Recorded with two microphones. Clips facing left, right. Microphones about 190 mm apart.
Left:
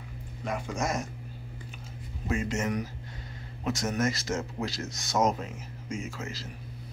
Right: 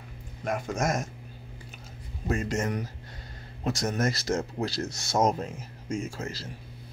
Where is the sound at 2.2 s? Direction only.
45° right (ahead or behind).